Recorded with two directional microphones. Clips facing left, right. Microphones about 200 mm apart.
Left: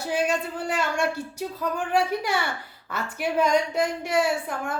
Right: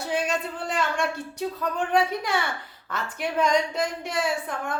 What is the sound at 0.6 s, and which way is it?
Speech, 10° left (ahead or behind).